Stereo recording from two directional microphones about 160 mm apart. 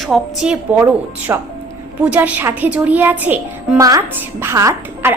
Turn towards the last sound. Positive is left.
turn(degrees=-15)  # may be behind; listen again after turning